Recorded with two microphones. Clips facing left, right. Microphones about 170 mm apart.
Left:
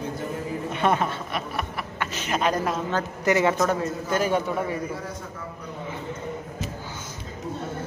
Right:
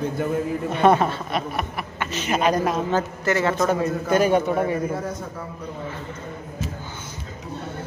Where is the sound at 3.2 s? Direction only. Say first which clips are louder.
Left 3 dB; 15° left (ahead or behind).